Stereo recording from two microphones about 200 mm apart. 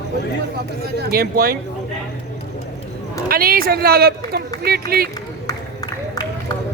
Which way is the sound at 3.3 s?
45° right (ahead or behind).